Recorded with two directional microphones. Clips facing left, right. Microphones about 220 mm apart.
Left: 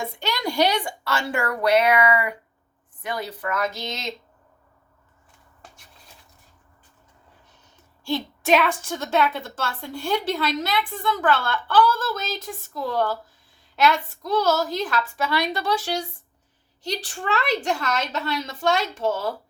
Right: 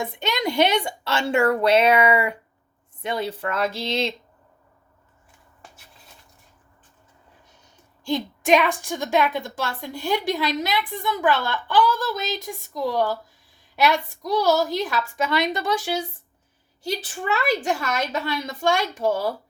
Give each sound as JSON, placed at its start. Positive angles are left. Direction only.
{"t": 0.0, "sound": "a woman's voice", "side_deg": -20}
{"t": 5.7, "sound": "a sound", "side_deg": -5}
{"t": 8.0, "sound": "a woman's voice", "side_deg": -15}